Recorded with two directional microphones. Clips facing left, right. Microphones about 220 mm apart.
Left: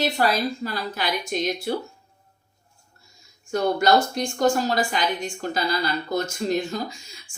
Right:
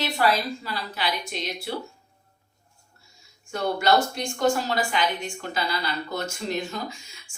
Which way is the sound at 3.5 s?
40° left (ahead or behind).